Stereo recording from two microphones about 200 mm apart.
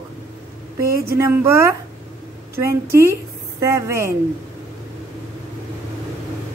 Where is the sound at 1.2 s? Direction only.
15° right (ahead or behind).